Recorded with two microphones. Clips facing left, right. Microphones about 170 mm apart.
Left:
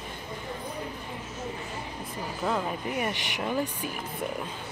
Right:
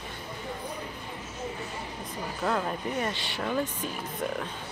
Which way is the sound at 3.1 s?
15° left (ahead or behind).